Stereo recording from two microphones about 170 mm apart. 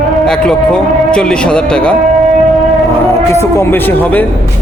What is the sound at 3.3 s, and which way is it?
Speech, 15° left (ahead or behind).